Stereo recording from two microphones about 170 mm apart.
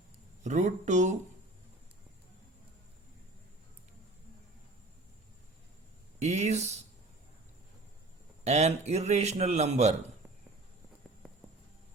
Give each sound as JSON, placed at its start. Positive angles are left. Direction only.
{"t": 0.4, "sound": "speech", "side_deg": -45}
{"t": 6.1, "sound": "a man's voice", "side_deg": -40}
{"t": 8.4, "sound": "a man's voice", "side_deg": -40}